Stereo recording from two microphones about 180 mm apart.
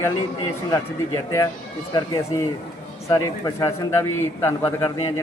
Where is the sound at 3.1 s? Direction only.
20° left (ahead or behind).